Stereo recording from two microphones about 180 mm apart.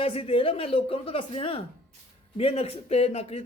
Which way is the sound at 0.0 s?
35° left (ahead or behind).